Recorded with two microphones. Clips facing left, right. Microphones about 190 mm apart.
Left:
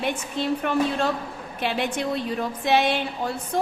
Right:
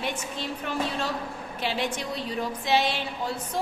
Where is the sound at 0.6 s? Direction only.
55° left (ahead or behind).